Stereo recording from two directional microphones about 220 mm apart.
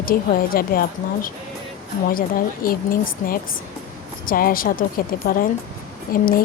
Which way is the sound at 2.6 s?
40° left (ahead or behind).